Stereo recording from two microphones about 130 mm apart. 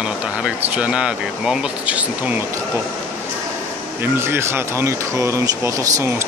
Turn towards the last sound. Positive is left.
turn(degrees=-20)  # may be behind; listen again after turning